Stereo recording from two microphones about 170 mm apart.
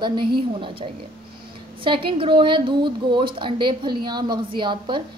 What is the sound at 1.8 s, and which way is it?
A woman's voice, 30° right (ahead or behind).